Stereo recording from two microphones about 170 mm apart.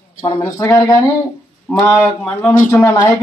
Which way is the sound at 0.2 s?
15° left (ahead or behind).